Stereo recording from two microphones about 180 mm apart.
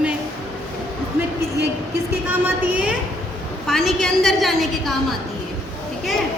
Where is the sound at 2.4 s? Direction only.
10° right (ahead or behind).